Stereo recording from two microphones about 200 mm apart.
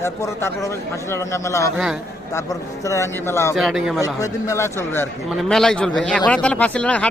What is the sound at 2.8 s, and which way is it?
Speech, 15° left (ahead or behind).